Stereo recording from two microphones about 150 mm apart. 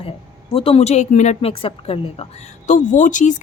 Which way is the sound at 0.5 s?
40° left (ahead or behind).